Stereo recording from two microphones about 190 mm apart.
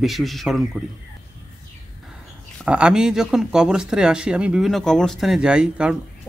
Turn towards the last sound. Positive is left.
turn(degrees=-5)  # may be behind; listen again after turning